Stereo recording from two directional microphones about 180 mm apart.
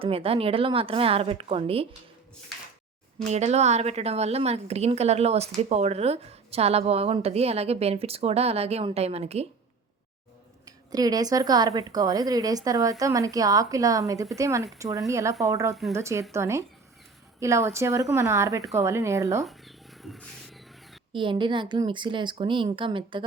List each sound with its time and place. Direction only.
0.0 s a woman's voice: 30° right (ahead or behind)
3.2 s a woman's voice: 40° right (ahead or behind)
10.7 s speech: 20° right (ahead or behind)
19.5 s a sound: centre (ahead or behind)
21.1 s speech: 25° right (ahead or behind)